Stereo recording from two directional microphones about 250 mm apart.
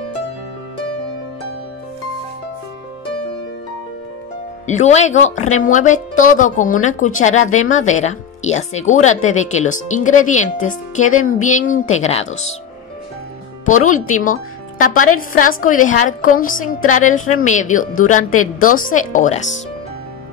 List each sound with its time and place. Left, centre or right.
4.6 s a woman's voice: left
13.7 s a woman's voice: left